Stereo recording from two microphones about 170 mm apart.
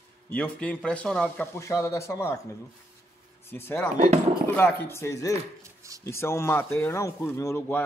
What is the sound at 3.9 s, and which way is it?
Speech, 40° right (ahead or behind).